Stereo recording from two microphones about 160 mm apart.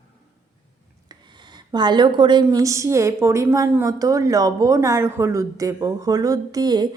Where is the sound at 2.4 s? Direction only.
20° right (ahead or behind).